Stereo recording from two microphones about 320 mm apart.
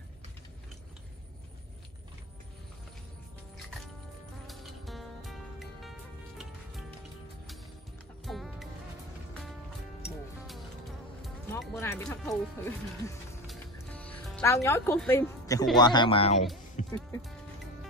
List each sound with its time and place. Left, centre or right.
4.5 s music: centre
8.3 s music: centre
11.2 s speech: centre
16.8 s music: left